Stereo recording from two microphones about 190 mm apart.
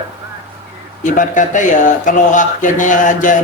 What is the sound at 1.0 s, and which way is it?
Speech, 45° left (ahead or behind).